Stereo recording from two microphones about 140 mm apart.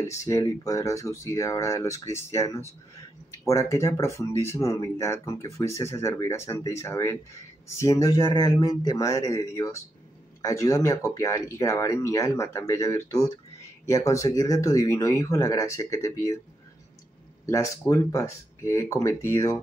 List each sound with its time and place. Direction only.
0.0 s speech: 20° left (ahead or behind)
17.5 s speech: 20° left (ahead or behind)